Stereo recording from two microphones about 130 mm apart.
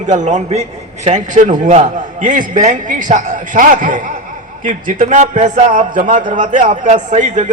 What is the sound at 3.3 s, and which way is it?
A man's voice, 90° right.